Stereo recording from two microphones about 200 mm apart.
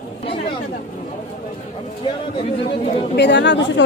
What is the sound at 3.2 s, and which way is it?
Speech, 60° left (ahead or behind).